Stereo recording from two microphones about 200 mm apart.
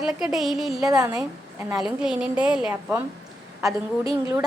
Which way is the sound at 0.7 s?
15° right (ahead or behind).